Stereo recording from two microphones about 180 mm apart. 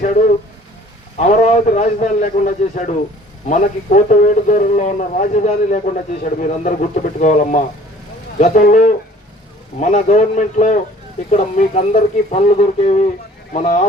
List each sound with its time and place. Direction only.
1.3 s a man's voice: 40° left (ahead or behind)